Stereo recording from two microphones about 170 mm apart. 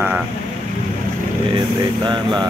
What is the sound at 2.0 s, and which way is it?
Speech, 25° right (ahead or behind).